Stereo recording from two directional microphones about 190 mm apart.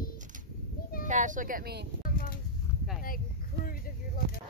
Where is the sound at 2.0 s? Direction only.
50° left (ahead or behind).